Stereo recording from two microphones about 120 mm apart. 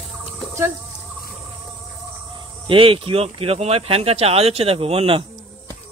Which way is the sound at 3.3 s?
55° right (ahead or behind).